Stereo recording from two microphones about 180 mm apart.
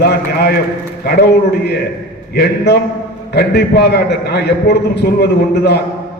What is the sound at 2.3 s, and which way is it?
A man's voice, 65° left (ahead or behind).